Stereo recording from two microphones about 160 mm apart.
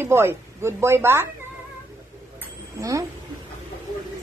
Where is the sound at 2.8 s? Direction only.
20° right (ahead or behind).